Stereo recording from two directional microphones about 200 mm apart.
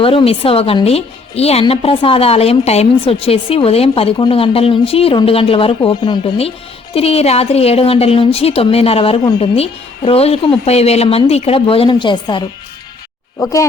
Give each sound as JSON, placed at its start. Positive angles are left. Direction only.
{"t": 0.0, "sound": "speech", "side_deg": 25}